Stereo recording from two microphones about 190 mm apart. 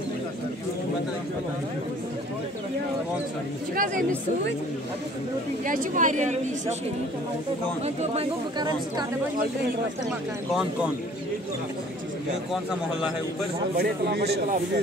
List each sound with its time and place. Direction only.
3.7 s speech: 45° right (ahead or behind)
5.7 s speech: 45° right (ahead or behind)
7.8 s speech: 35° right (ahead or behind)
10.5 s speech: 5° right (ahead or behind)
13.7 s a man's voice: 60° right (ahead or behind)